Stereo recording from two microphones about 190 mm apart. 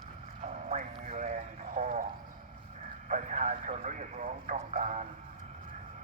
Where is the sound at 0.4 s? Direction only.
40° right (ahead or behind).